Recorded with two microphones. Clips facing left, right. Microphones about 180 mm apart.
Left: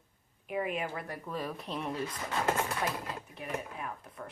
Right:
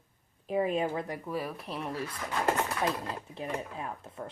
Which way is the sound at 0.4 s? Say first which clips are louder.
Right 5 dB; 30° right (ahead or behind).